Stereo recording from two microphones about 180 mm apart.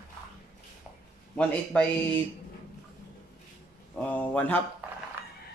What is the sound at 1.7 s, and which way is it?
Speech, 5° left (ahead or behind).